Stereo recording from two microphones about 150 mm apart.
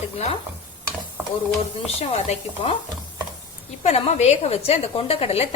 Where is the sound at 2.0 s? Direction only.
45° left (ahead or behind).